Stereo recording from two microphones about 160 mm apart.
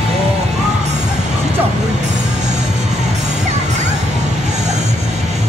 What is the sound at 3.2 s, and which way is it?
Music, 45° right (ahead or behind).